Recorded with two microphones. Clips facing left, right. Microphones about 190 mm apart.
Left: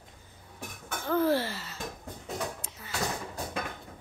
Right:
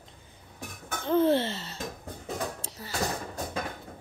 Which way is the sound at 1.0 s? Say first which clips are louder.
Right 3 dB; 25° right (ahead or behind).